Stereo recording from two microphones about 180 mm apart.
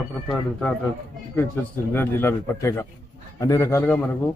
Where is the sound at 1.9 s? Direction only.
15° left (ahead or behind).